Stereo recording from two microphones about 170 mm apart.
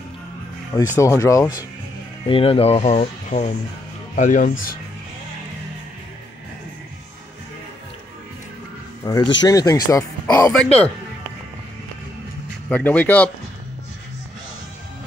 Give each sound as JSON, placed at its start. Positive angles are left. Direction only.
{"t": 0.9, "sound": "speech", "side_deg": 20}
{"t": 2.2, "sound": "speech", "side_deg": 30}
{"t": 9.0, "sound": "speech", "side_deg": 20}
{"t": 10.5, "sound": "a man's voice", "side_deg": 5}
{"t": 12.6, "sound": "speech", "side_deg": 10}